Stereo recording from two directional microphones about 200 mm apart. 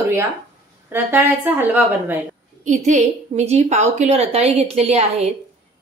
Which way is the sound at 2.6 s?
35° right (ahead or behind).